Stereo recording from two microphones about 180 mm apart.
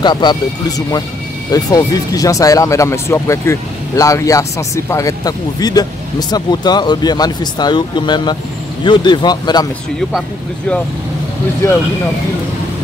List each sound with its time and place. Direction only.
0.0 s speech: 25° left (ahead or behind)